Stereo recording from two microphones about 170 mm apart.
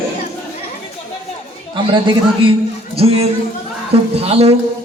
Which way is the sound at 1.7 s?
30° right (ahead or behind).